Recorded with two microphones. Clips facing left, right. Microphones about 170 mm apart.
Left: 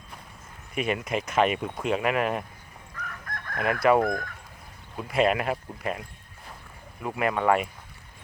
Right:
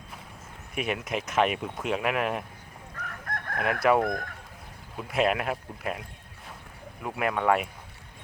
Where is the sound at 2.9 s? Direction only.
50° right (ahead or behind).